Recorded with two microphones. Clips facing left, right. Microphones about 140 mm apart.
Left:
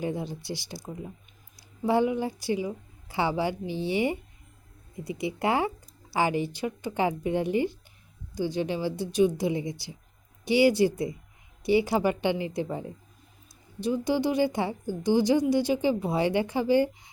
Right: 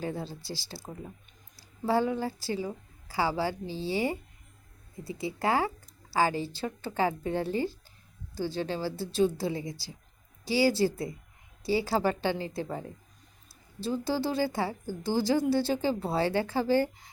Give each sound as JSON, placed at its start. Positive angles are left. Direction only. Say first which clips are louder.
{"t": 0.0, "sound": "a woman's voice", "louder": "left 4 dB", "side_deg": 20}
{"t": 13.7, "sound": "a woman's voice", "louder": "left 4 dB", "side_deg": 20}